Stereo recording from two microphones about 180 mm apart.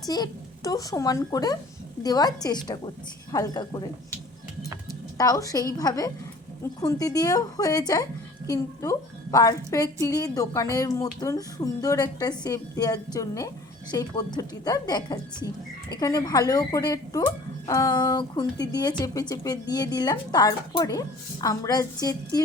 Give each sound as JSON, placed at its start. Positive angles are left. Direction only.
{"t": 0.1, "sound": "a woman's voice", "side_deg": 20}
{"t": 5.1, "sound": "a woman's voice", "side_deg": 20}